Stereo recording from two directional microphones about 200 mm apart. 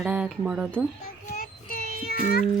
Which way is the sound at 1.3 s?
50° left (ahead or behind).